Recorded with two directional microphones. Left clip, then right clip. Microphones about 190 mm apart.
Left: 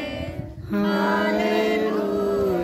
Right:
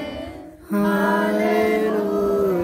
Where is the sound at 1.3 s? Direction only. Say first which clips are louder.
Right 2 dB; 15° right (ahead or behind).